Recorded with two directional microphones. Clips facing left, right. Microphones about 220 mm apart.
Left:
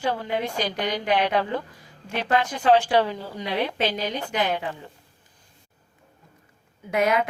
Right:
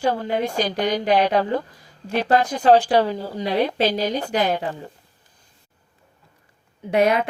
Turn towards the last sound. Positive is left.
turn(degrees=-30)  # may be behind; listen again after turning